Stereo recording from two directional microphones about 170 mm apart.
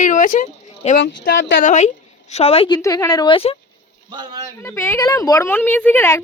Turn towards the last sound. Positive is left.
turn(degrees=10)  # may be behind; listen again after turning